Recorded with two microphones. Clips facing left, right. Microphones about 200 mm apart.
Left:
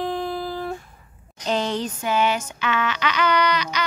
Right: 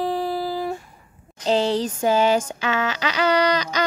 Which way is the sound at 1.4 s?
30° right (ahead or behind).